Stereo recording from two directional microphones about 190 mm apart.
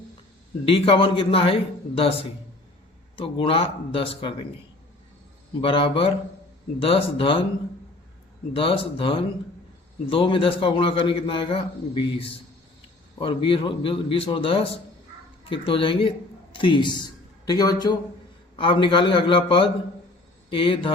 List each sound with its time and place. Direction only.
0.6 s a man's voice: 30° left (ahead or behind)
5.5 s a man's voice: 25° left (ahead or behind)
8.5 s a man's voice: 30° left (ahead or behind)